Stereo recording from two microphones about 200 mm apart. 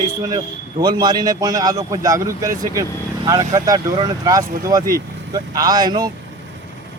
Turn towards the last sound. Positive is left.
turn(degrees=-20)  # may be behind; listen again after turning